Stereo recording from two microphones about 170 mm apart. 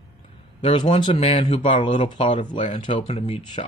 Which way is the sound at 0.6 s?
30° left (ahead or behind).